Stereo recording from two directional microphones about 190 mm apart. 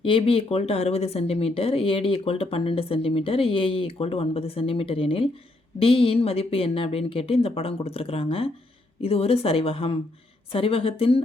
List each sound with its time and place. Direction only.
0.0 s a woman's voice: 30° left (ahead or behind)